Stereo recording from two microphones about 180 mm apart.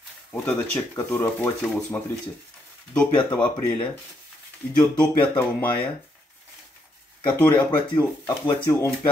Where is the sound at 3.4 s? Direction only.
25° left (ahead or behind).